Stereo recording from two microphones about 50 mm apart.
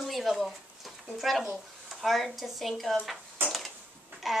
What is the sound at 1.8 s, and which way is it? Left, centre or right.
Speech, centre.